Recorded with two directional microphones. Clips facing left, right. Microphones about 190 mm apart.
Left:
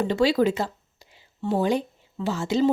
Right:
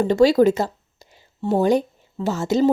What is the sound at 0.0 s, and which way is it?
Speech, 45° right (ahead or behind).